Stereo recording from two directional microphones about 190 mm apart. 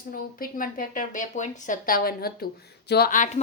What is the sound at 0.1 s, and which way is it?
A woman's voice, 50° left (ahead or behind).